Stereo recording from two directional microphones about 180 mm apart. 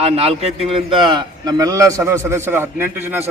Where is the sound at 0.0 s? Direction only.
35° right (ahead or behind).